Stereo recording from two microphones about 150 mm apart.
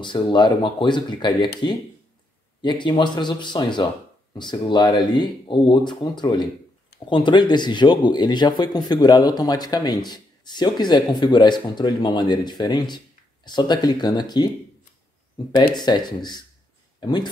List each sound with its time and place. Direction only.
0.0 s speech: 30° left (ahead or behind)
2.6 s speech: 30° left (ahead or behind)